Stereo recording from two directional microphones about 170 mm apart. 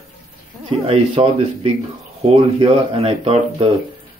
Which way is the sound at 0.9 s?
35° right (ahead or behind).